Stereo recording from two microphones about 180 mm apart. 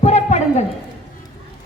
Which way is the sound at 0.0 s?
35° left (ahead or behind).